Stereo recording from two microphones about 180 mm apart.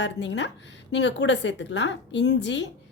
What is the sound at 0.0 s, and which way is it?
A woman's voice, 80° left.